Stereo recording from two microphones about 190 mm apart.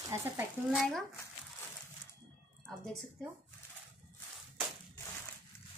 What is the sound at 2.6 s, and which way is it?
Speech, 5° left (ahead or behind).